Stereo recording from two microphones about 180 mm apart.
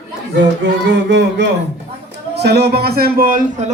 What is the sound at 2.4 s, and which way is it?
A man's voice, 65° right (ahead or behind).